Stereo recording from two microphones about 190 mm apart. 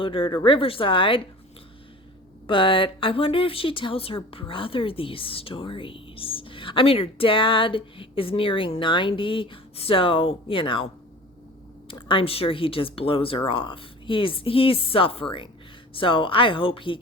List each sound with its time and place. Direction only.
0.0 s a woman's voice: 25° left (ahead or behind)
2.5 s a woman's voice: 25° left (ahead or behind)
11.9 s a woman's voice: 25° left (ahead or behind)